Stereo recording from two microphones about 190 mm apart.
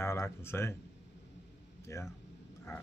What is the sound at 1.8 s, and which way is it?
Speech, 15° left (ahead or behind).